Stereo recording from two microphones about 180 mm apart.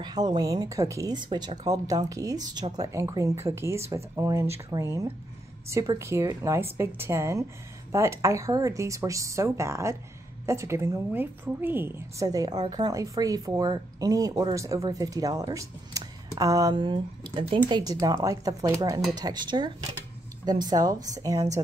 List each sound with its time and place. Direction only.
0.0 s a woman's voice: 20° right (ahead or behind)